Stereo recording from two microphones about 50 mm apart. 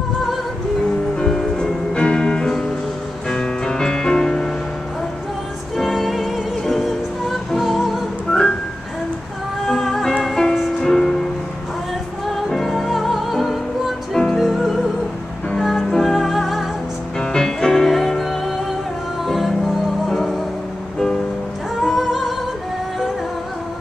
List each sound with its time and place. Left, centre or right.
1.1 s music: centre
5.8 s music: centre
8.3 s music: centre
9.7 s music: centre
12.4 s music: centre
15.9 s music: centre
17.2 s music: centre
21.8 s music: centre